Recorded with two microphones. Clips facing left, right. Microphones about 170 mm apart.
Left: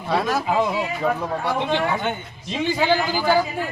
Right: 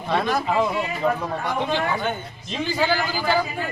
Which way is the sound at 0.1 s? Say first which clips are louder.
Left 1 dB; 5° left (ahead or behind).